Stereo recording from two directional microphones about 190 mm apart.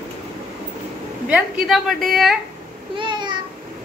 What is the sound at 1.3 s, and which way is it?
A woman's voice, 5° right (ahead or behind).